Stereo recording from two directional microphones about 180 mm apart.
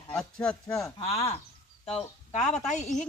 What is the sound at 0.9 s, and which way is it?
Speech, 35° left (ahead or behind).